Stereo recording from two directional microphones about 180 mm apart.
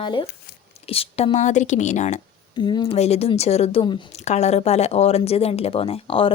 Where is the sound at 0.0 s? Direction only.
25° left (ahead or behind); by 2.2 s 40° left (ahead or behind).